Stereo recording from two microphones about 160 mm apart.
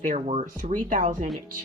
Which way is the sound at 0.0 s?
50° right (ahead or behind).